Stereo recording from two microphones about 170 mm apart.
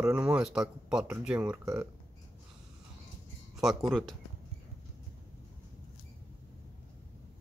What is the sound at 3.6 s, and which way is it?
Speech, centre (ahead or behind).